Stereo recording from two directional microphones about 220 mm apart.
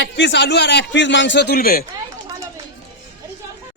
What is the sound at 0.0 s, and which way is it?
Speech, 50° left (ahead or behind).